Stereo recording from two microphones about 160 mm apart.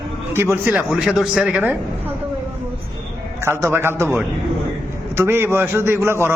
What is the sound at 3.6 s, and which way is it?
A man's voice, 15° right (ahead or behind).